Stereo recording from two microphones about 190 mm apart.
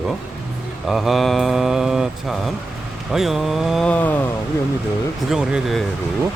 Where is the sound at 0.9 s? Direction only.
Centre (ahead or behind).